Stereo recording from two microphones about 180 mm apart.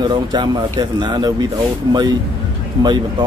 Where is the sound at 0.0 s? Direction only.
25° right (ahead or behind).